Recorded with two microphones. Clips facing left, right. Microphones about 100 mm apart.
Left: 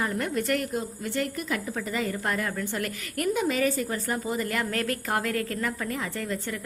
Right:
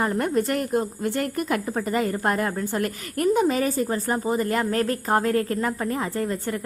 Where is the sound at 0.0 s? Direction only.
40° right (ahead or behind).